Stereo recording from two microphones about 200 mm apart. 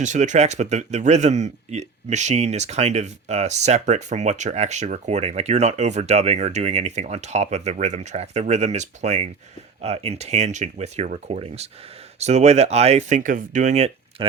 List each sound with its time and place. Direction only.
0.0 s speech: 35° right (ahead or behind)